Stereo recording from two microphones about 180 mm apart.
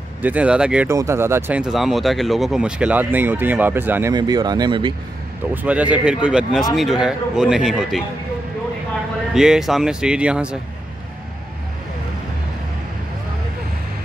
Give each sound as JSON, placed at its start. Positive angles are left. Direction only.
{"t": 0.2, "sound": "speech", "side_deg": -10}
{"t": 4.1, "sound": "speech", "side_deg": -25}
{"t": 5.5, "sound": "a man's voice", "side_deg": -10}
{"t": 9.3, "sound": "a man's voice", "side_deg": -5}